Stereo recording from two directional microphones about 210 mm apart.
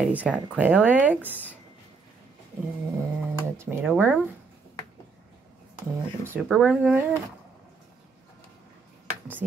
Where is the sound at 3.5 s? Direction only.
10° right (ahead or behind).